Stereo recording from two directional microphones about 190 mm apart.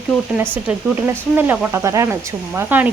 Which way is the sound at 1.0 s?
10° right (ahead or behind).